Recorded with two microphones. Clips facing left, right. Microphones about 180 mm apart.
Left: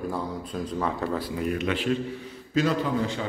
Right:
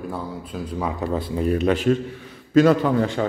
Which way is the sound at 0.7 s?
10° right (ahead or behind).